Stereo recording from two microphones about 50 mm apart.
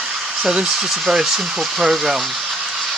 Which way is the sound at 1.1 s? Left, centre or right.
Centre.